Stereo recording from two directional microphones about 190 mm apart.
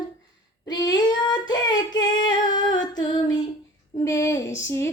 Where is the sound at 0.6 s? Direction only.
20° left (ahead or behind).